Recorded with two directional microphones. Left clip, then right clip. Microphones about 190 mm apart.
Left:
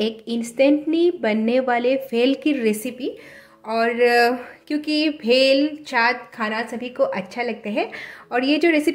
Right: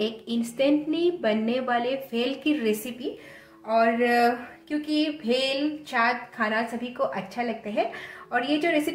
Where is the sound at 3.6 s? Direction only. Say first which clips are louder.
Left 4 dB; 50° left (ahead or behind).